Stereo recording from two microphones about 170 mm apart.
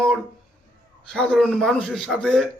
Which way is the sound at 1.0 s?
5° left (ahead or behind).